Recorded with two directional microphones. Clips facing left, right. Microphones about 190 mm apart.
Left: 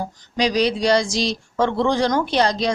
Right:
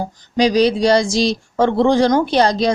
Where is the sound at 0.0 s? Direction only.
30° right (ahead or behind).